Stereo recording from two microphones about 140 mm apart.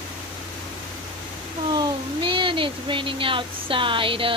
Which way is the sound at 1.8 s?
35° right (ahead or behind).